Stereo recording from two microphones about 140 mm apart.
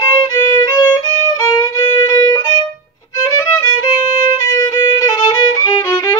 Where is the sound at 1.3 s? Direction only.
25° left (ahead or behind).